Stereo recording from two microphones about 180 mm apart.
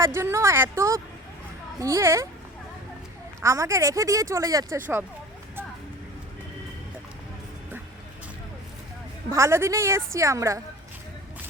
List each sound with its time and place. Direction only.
0.0 s a woman's voice: 15° right (ahead or behind)
3.4 s speech: 15° right (ahead or behind)
9.3 s speech: 15° right (ahead or behind)